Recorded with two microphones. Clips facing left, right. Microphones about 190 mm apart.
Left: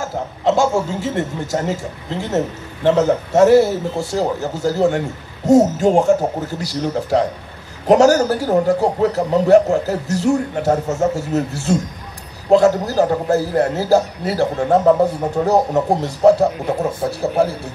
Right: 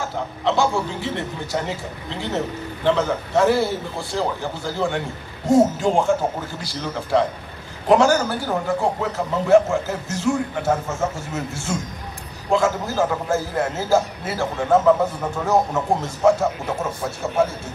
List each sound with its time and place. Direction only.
0.0 s a man's voice: 45° left (ahead or behind)